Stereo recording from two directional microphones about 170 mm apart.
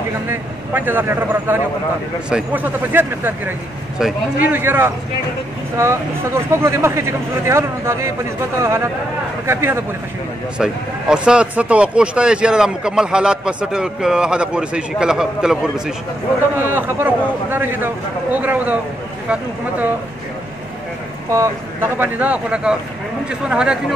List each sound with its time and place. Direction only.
0.3 s a man's voice: 10° right (ahead or behind)
21.3 s a man's voice: 15° right (ahead or behind)